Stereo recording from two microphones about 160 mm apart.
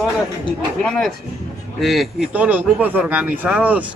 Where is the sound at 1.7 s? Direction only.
Centre (ahead or behind).